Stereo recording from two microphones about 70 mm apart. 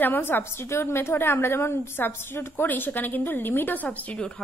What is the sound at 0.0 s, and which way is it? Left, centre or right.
A woman's voice, left.